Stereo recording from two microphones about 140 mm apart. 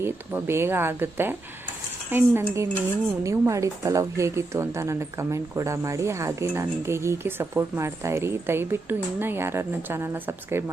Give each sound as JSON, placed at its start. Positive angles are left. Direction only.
{"t": 0.0, "sound": "speech", "side_deg": -15}